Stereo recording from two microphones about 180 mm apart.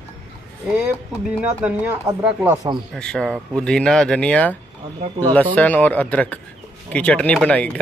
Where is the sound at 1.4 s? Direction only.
5° right (ahead or behind).